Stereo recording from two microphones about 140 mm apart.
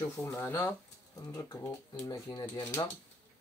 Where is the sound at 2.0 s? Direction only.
25° left (ahead or behind).